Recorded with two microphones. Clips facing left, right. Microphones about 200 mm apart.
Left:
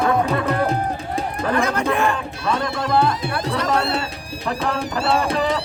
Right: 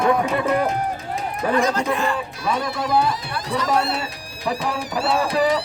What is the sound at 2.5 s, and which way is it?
Speech, 5° right (ahead or behind).